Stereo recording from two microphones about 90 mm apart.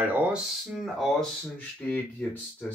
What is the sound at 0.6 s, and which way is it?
Speech, centre (ahead or behind).